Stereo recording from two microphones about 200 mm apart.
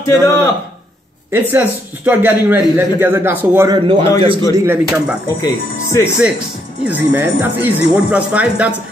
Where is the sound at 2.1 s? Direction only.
10° right (ahead or behind).